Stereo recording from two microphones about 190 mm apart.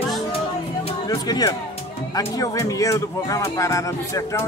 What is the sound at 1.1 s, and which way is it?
Speech, 20° left (ahead or behind).